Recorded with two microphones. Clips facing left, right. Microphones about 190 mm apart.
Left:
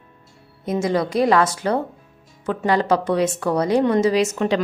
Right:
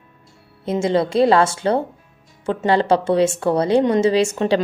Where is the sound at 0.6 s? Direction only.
25° right (ahead or behind).